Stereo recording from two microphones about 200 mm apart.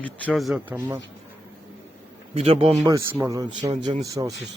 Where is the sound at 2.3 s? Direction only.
30° right (ahead or behind).